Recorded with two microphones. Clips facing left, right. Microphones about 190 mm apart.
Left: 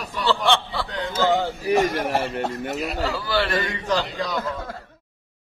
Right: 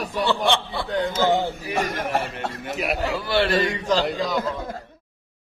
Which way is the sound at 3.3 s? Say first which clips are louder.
Right 4 dB; 25° right (ahead or behind).